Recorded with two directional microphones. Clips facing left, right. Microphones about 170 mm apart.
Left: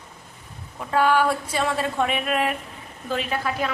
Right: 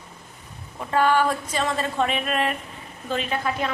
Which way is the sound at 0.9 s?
10° left (ahead or behind).